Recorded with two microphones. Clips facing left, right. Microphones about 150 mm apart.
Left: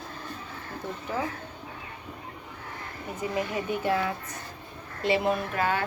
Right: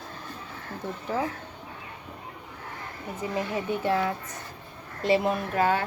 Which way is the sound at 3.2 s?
30° right (ahead or behind).